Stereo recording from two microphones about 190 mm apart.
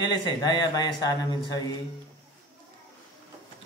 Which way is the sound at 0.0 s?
20° left (ahead or behind).